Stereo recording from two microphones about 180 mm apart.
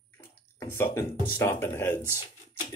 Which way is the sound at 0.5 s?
15° left (ahead or behind).